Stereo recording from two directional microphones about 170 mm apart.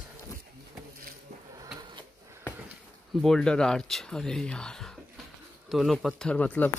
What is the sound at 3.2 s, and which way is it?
Speech, 5° left (ahead or behind).